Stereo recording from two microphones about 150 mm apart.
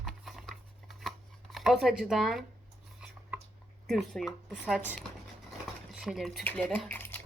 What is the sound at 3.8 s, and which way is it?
A woman's voice, centre (ahead or behind).